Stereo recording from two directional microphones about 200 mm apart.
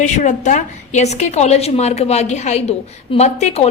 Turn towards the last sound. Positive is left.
turn(degrees=35)  # may be behind; listen again after turning